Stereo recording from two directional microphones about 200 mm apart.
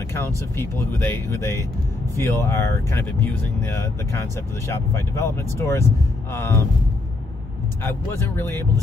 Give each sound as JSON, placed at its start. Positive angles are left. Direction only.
{"t": 0.1, "sound": "speech", "side_deg": 10}
{"t": 7.8, "sound": "speech", "side_deg": 10}